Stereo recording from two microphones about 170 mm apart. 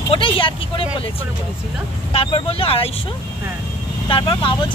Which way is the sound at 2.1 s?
35° left (ahead or behind).